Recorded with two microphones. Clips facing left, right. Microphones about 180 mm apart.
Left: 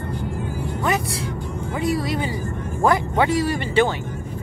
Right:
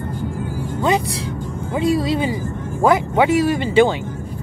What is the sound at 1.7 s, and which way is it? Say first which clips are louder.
Speech: right 5 dB; 20° right (ahead or behind).